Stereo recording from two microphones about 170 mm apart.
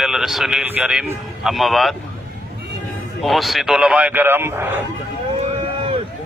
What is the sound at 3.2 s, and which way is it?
Speech, centre (ahead or behind).